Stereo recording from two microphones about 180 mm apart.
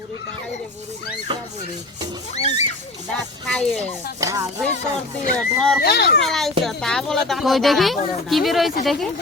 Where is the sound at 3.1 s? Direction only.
5° left (ahead or behind).